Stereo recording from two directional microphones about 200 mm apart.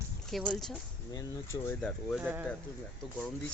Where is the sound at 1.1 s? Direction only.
15° left (ahead or behind).